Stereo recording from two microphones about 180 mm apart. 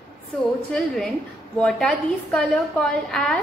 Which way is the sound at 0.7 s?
Centre (ahead or behind).